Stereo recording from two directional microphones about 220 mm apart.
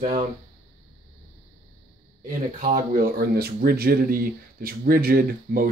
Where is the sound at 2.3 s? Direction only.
40° right (ahead or behind).